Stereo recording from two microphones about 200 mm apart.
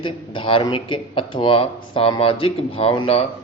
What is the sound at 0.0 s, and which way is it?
A man's voice, 25° left (ahead or behind).